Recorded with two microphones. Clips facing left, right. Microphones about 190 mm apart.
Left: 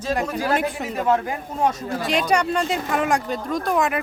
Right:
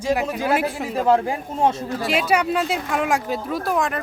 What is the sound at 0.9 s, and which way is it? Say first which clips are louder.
Speech: right 4 dB; 30° right (ahead or behind).